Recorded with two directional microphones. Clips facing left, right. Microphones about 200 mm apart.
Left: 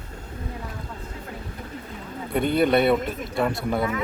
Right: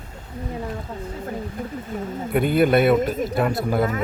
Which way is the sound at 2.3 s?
5° right (ahead or behind).